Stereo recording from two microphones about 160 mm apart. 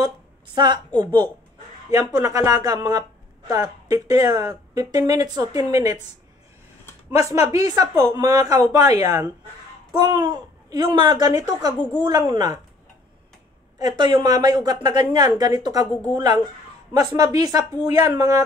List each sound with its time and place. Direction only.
1.0 s speech: 25° right (ahead or behind)
7.1 s speech: 20° right (ahead or behind)
13.7 s speech: 25° right (ahead or behind)